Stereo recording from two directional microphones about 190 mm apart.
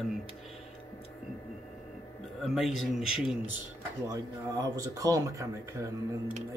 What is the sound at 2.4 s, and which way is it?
Speech, centre (ahead or behind).